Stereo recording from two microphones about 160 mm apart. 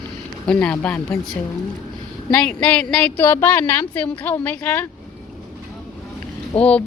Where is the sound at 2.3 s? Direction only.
5° left (ahead or behind).